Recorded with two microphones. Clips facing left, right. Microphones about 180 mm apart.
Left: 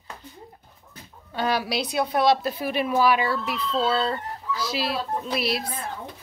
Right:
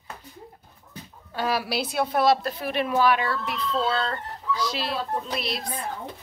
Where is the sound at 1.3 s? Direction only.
5° right (ahead or behind).